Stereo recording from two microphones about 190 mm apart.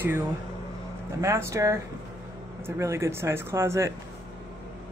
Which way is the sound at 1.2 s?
15° right (ahead or behind).